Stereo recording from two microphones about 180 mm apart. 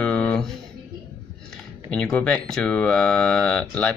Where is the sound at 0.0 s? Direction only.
5° left (ahead or behind).